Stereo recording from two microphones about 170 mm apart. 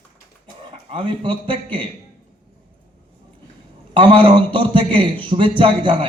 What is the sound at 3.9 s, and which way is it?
A man's voice, 30° right (ahead or behind).